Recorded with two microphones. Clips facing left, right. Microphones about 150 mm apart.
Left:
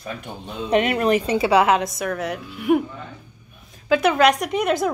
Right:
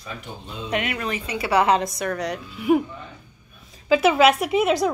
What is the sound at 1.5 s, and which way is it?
A woman's voice, 5° left (ahead or behind).